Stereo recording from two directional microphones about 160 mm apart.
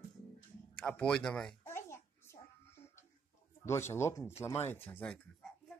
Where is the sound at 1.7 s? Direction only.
15° left (ahead or behind).